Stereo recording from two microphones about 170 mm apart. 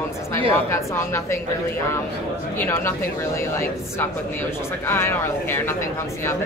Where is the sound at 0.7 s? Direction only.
15° left (ahead or behind).